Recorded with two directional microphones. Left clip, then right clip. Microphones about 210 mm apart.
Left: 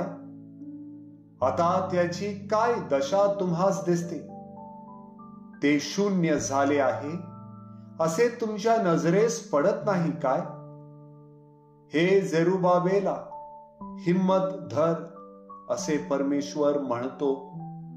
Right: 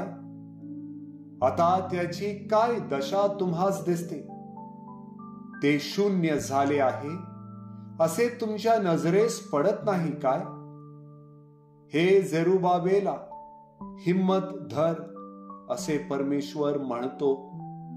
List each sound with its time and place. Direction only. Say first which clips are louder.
1.4 s speech: right 1 dB; 40° right (ahead or behind)
5.6 s speech: even; 40° right (ahead or behind)
11.9 s speech: even; 40° right (ahead or behind)